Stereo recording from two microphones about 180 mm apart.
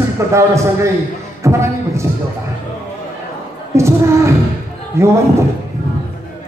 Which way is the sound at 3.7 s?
15° right (ahead or behind).